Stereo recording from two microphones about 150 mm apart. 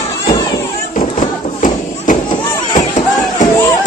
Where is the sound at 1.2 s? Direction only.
60° left (ahead or behind).